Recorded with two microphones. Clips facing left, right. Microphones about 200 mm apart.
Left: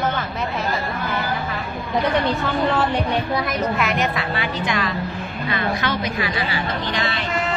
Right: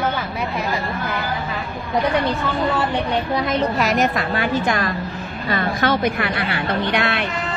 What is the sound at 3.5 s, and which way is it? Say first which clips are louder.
A woman's voice: right 3 dB; 35° right (ahead or behind).